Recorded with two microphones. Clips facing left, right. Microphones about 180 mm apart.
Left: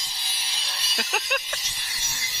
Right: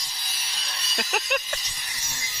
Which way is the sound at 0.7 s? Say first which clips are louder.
Right 2 dB; centre (ahead or behind).